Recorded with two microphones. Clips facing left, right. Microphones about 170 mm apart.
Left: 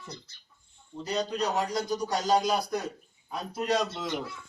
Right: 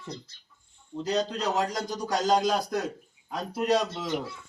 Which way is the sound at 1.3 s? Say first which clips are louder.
Even; 90° right.